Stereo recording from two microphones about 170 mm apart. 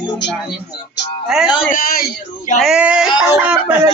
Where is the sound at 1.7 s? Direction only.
55° left (ahead or behind).